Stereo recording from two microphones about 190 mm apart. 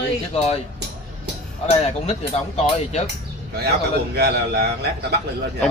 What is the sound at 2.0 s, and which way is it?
Speech, 35° left (ahead or behind).